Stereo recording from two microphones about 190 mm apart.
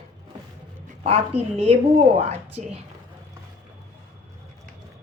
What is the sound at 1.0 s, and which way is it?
A woman's voice, 30° right (ahead or behind).